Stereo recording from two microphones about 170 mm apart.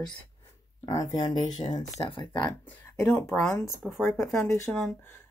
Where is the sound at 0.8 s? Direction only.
20° left (ahead or behind).